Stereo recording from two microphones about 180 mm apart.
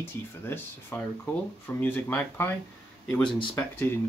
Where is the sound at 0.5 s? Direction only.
10° left (ahead or behind).